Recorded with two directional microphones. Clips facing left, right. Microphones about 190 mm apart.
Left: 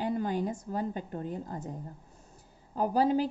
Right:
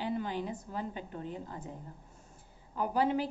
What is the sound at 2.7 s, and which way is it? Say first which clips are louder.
Speech: left 4 dB; 35° left (ahead or behind).